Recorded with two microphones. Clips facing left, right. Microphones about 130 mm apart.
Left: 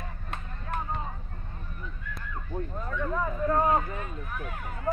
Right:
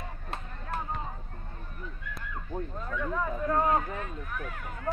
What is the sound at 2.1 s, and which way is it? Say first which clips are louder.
Speech: left 1 dB; 5° right (ahead or behind).